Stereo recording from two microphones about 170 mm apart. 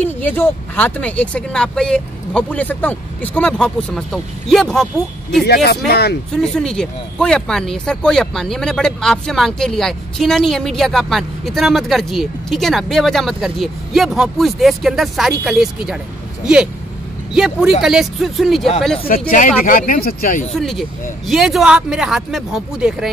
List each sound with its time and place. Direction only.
0.0 s speech: 10° left (ahead or behind)
5.4 s speech: 70° left (ahead or behind)
6.3 s speech: 5° left (ahead or behind)
17.4 s speech: 5° right (ahead or behind)
19.0 s speech: 60° left (ahead or behind)
20.5 s speech: centre (ahead or behind)